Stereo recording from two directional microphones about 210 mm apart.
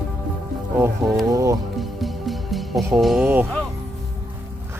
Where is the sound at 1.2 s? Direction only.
15° right (ahead or behind).